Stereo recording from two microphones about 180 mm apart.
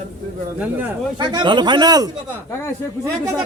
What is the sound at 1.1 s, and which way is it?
Speech, 25° right (ahead or behind).